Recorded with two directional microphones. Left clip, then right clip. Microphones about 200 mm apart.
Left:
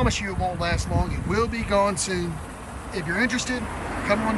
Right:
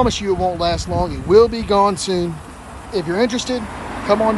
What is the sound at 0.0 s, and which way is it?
Speech, 20° right (ahead or behind).